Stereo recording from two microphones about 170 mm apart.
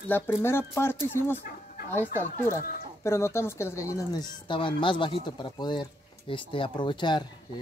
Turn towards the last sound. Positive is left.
turn(degrees=25)  # may be behind; listen again after turning